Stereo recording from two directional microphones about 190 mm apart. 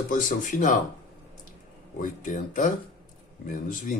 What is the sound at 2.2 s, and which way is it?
Speech, 45° left (ahead or behind).